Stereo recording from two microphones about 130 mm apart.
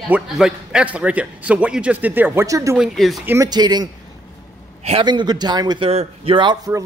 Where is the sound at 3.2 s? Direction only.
15° right (ahead or behind).